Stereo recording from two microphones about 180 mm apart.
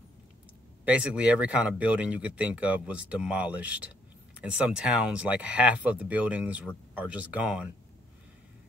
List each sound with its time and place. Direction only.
0.8 s speech: 5° right (ahead or behind)